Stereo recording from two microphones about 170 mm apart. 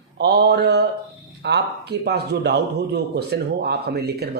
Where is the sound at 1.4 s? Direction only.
85° right.